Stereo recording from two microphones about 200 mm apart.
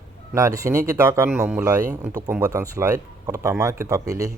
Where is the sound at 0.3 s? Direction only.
15° right (ahead or behind).